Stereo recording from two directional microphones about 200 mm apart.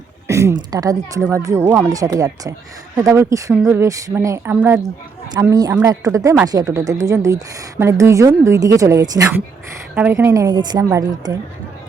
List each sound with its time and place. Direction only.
0.3 s a woman's voice: 15° right (ahead or behind)